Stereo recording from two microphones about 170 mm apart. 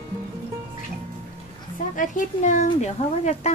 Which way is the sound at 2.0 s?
50° left (ahead or behind).